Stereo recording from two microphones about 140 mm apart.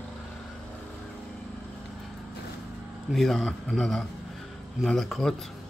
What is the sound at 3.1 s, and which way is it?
Speech, centre (ahead or behind).